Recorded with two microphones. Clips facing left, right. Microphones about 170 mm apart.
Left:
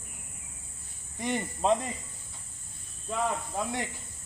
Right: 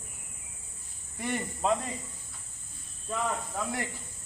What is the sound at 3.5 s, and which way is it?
Speech, 25° left (ahead or behind).